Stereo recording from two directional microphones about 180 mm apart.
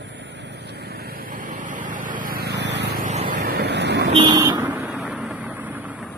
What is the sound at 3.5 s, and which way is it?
Waves, 65° right (ahead or behind).